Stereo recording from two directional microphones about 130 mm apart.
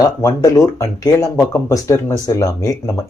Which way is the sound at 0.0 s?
25° left (ahead or behind).